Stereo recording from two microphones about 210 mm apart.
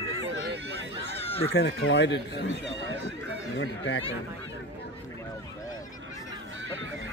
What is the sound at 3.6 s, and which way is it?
Speech, 60° left (ahead or behind).